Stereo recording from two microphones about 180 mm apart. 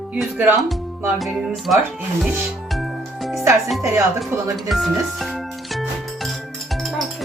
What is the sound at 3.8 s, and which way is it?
Speech, 15° right (ahead or behind).